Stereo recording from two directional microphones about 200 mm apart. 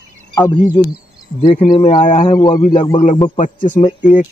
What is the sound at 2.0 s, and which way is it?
Speech, 35° left (ahead or behind).